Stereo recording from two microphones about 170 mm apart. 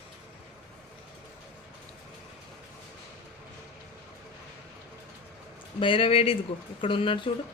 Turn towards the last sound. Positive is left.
turn(degrees=30)  # may be behind; listen again after turning